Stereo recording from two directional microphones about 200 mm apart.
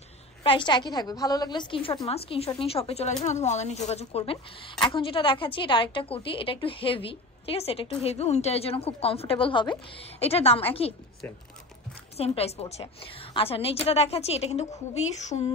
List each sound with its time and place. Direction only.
0.4 s speech: 25° left (ahead or behind)
12.2 s a woman's voice: 30° left (ahead or behind)